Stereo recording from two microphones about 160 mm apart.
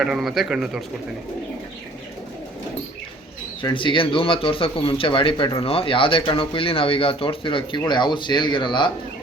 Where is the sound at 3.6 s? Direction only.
30° left (ahead or behind).